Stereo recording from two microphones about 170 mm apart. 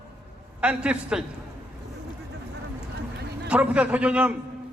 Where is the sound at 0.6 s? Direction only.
5° right (ahead or behind).